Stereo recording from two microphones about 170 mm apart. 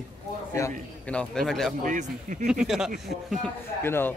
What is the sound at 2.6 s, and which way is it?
Speech, centre (ahead or behind).